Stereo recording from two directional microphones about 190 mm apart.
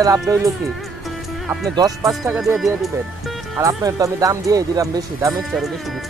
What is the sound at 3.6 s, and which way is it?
Speech, 15° right (ahead or behind).